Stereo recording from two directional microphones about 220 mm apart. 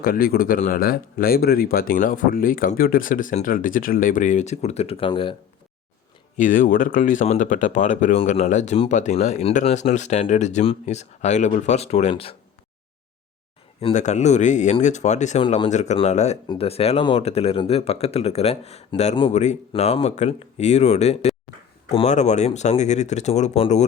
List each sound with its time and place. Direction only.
0.0 s speech: 40° left (ahead or behind); by 5.4 s 25° left (ahead or behind)
6.3 s speech: 35° left (ahead or behind)
13.8 s speech: 30° left (ahead or behind)